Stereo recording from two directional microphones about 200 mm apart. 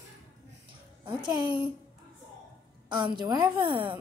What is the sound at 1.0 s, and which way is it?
Speech, 20° right (ahead or behind).